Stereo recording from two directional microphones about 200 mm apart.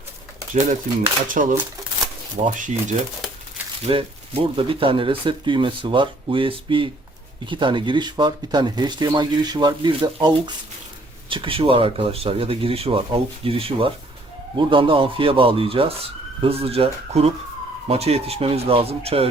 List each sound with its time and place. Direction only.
1.3 s speech: 40° right (ahead or behind)
3.8 s speech: 25° right (ahead or behind)